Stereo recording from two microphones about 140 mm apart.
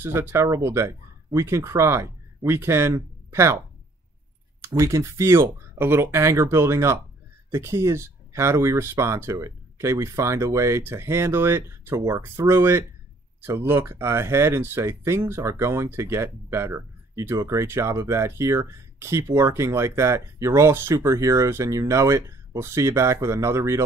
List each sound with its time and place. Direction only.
0.0 s speech: 15° right (ahead or behind)
4.7 s speech: 20° right (ahead or behind)